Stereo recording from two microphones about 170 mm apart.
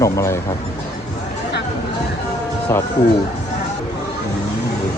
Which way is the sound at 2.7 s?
15° left (ahead or behind).